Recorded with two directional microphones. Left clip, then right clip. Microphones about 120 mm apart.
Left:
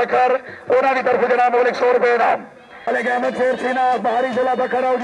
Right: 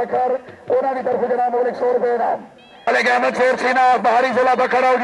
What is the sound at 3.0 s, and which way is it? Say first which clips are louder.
A man's voice: right 2 dB; 30° right (ahead or behind).